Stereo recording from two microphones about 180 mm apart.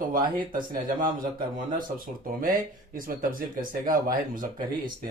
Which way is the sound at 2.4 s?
55° right (ahead or behind).